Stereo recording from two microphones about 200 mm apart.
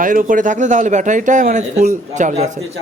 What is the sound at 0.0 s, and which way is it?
Speech, 40° right (ahead or behind).